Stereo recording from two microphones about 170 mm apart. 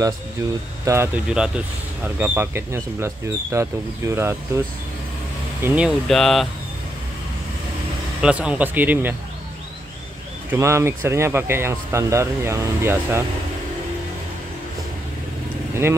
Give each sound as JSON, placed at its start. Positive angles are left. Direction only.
{"t": 0.8, "sound": "speech", "side_deg": -15}
{"t": 8.2, "sound": "speech", "side_deg": -5}
{"t": 10.5, "sound": "speech", "side_deg": -15}